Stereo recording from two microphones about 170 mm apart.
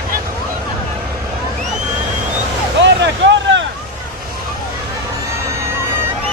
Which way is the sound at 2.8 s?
90° right.